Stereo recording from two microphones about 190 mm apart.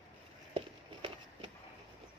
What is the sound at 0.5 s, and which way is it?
Run, 25° right (ahead or behind).